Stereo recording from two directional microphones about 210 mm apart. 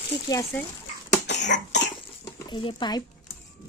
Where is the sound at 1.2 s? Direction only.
55° left (ahead or behind).